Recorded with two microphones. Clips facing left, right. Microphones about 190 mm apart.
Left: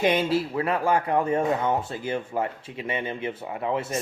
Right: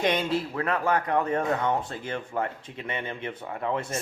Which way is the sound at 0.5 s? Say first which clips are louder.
Left 2 dB; 10° left (ahead or behind).